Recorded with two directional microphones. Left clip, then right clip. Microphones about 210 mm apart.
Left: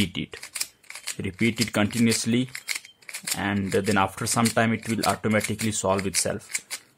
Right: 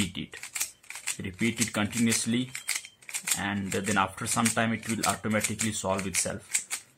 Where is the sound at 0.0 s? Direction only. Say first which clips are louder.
Left 5 dB; 50° left (ahead or behind).